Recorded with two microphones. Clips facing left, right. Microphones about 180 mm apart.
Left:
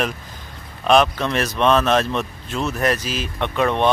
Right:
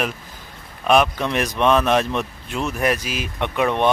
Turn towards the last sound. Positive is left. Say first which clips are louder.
# even
turn(degrees=-15)  # may be behind; listen again after turning